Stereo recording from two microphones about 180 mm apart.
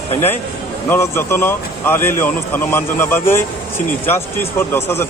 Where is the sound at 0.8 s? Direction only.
15° left (ahead or behind).